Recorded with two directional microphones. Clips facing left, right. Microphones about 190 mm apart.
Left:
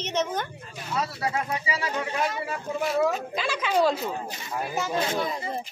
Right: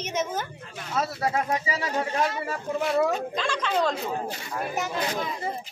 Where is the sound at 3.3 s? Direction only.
10° left (ahead or behind).